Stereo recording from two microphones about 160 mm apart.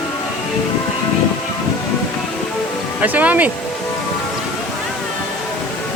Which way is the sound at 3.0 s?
10° right (ahead or behind).